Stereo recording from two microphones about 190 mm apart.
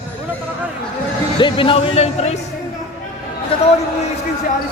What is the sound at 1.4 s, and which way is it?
Speech, 25° left (ahead or behind).